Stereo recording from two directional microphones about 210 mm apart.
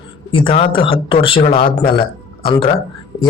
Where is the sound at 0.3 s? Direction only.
25° left (ahead or behind).